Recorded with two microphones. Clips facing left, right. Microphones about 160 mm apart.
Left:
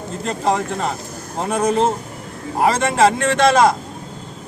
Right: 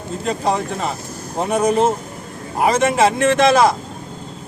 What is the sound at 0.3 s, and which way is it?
A man's voice, centre (ahead or behind).